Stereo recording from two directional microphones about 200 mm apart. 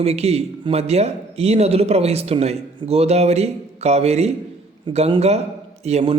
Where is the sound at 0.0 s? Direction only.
30° right (ahead or behind).